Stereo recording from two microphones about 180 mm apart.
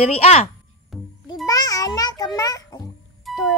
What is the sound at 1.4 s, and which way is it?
A child's voice, 20° left (ahead or behind).